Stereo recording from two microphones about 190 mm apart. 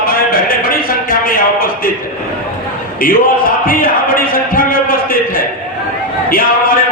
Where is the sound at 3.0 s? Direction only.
50° left (ahead or behind).